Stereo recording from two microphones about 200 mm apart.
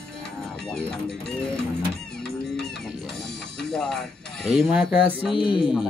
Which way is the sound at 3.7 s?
5° left (ahead or behind).